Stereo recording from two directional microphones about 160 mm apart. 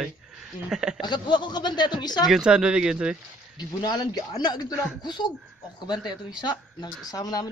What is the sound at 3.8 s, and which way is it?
Speech, 25° left (ahead or behind).